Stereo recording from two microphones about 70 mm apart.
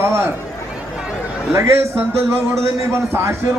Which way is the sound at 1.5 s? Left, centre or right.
Right.